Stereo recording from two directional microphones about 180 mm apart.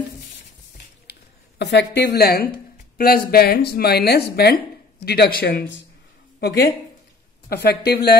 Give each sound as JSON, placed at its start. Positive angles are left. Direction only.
{"t": 1.1, "sound": "a sound", "side_deg": 65}
{"t": 1.6, "sound": "speech", "side_deg": 70}
{"t": 6.4, "sound": "speech", "side_deg": 65}